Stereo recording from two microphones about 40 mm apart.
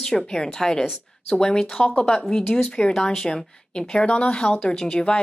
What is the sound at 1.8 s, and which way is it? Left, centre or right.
Speech, left.